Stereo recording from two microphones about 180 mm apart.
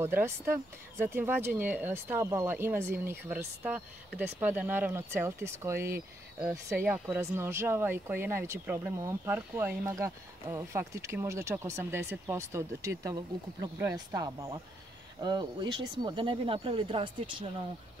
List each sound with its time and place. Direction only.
0.0 s speech: 15° right (ahead or behind)